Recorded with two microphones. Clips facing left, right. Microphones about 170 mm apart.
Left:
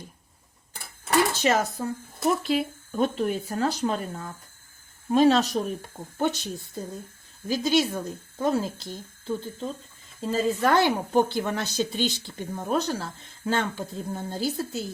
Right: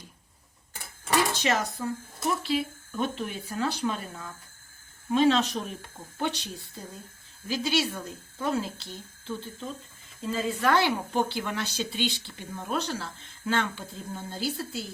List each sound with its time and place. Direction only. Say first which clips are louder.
1.3 s a woman's voice: left 4 dB; 45° left (ahead or behind)